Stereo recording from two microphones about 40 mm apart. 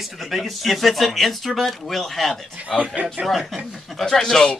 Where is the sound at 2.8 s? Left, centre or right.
Right.